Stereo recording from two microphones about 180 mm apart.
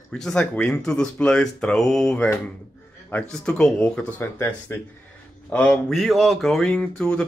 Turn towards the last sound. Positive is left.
turn(degrees=5)  # may be behind; listen again after turning